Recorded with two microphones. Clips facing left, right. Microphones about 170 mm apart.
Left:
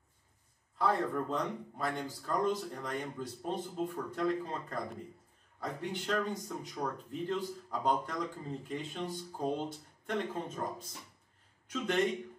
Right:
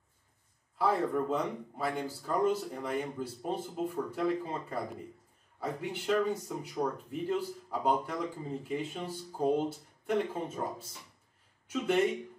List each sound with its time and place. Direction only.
0.7 s speech: 5° right (ahead or behind)